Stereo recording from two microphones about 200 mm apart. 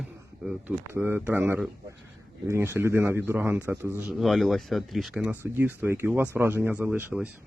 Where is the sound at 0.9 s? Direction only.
10° right (ahead or behind).